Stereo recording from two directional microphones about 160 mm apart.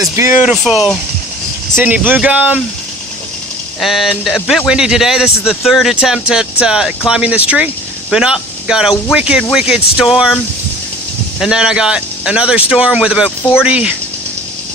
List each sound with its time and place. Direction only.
0.0 s speech: 15° right (ahead or behind)
0.5 s speech: centre (ahead or behind)
3.8 s speech: centre (ahead or behind)
11.3 s speech: 5° right (ahead or behind)